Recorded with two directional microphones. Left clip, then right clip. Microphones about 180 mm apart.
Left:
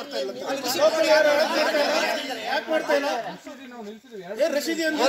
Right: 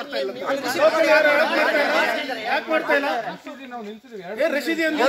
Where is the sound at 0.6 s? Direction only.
Centre (ahead or behind).